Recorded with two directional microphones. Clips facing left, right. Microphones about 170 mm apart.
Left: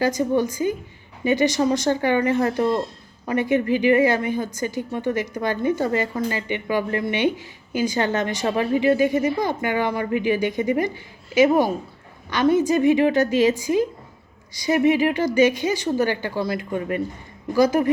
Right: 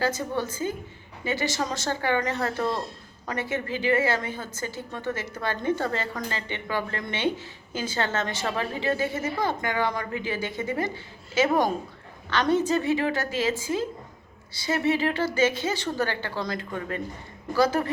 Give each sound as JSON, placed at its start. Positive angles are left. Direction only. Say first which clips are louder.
{"t": 0.0, "sound": "speech", "louder": "left 7 dB", "side_deg": 15}